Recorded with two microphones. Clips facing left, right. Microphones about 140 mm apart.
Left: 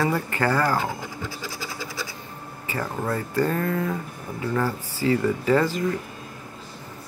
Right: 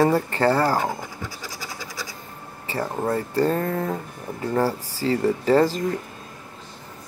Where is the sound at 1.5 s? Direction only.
45° right (ahead or behind).